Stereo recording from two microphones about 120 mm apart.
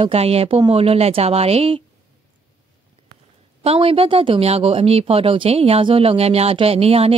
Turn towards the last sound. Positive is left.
turn(degrees=-55)  # may be behind; listen again after turning